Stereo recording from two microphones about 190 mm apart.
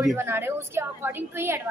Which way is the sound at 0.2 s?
15° right (ahead or behind).